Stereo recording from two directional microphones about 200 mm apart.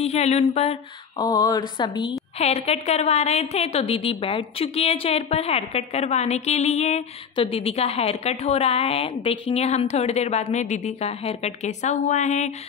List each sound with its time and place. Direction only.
0.0 s a woman's voice: 30° left (ahead or behind)
1.1 s a woman's voice: 20° left (ahead or behind); by 12.5 s 35° left (ahead or behind)